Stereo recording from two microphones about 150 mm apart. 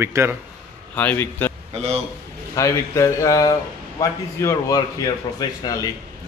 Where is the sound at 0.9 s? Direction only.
10° left (ahead or behind).